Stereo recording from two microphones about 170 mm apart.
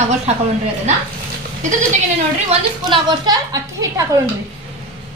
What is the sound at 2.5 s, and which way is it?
Speech, 35° right (ahead or behind).